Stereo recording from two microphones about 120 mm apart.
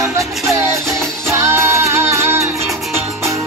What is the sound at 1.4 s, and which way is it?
Music, 20° right (ahead or behind).